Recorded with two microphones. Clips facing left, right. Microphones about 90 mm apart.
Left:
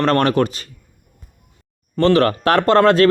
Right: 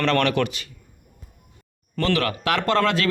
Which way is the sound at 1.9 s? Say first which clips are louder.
Left 9 dB; 35° left (ahead or behind).